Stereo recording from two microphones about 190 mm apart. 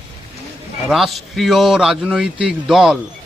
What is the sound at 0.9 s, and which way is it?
A man's voice, centre (ahead or behind).